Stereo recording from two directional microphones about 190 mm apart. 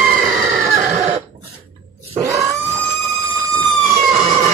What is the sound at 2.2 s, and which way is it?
Grunt, 15° right (ahead or behind).